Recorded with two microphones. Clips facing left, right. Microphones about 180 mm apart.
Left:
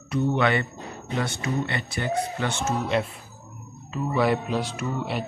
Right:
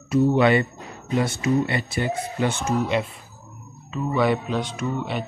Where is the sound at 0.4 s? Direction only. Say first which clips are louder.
Right 5 dB; 20° right (ahead or behind).